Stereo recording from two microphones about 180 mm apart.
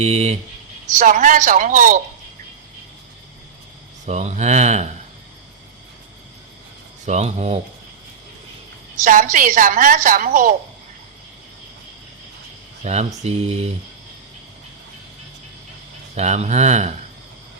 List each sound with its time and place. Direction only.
0.0 s a woman's voice: 35° right (ahead or behind)
4.0 s speech: 40° right (ahead or behind)
7.0 s speech: 40° right (ahead or behind)
9.0 s a woman's voice: 45° right (ahead or behind)
12.8 s speech: 40° right (ahead or behind)
16.1 s speech: 40° right (ahead or behind)